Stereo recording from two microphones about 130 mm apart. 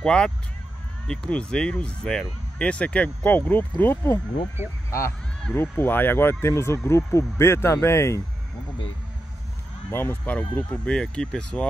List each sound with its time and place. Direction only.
0.0 s speech: 5° left (ahead or behind)
4.6 s speech: 15° right (ahead or behind)
5.5 s speech: 15° left (ahead or behind)
9.8 s speech: 15° left (ahead or behind)